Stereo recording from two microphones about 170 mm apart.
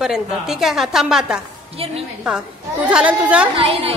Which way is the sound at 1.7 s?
35° right (ahead or behind).